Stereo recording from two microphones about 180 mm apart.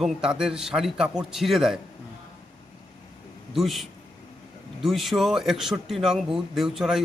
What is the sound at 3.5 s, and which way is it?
Speech, centre (ahead or behind).